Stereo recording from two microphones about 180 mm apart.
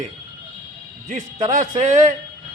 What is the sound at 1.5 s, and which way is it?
Speech, 45° right (ahead or behind).